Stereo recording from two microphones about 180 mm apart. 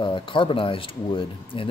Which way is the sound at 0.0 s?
30° left (ahead or behind).